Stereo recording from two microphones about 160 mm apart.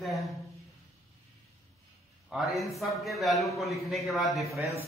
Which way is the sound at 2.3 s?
Centre (ahead or behind).